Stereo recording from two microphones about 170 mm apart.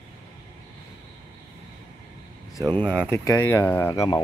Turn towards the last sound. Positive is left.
turn(degrees=15)  # may be behind; listen again after turning